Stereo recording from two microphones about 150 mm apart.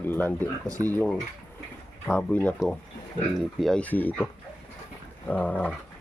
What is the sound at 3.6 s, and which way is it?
Speech, 5° left (ahead or behind).